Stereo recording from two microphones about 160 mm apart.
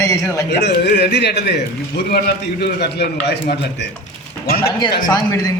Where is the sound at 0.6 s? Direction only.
90° left.